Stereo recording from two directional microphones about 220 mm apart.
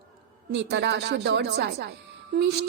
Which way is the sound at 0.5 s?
50° right (ahead or behind).